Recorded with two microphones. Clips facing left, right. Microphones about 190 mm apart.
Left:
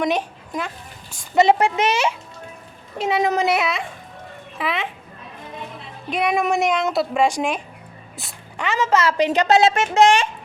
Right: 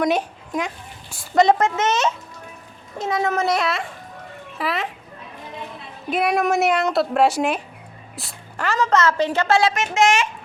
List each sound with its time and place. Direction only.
0.0 s speech: 5° right (ahead or behind)
1.4 s a woman's voice: 10° left (ahead or behind)
3.4 s speech: 5° left (ahead or behind)
6.1 s a woman's voice: centre (ahead or behind); by 10.2 s 30° left (ahead or behind)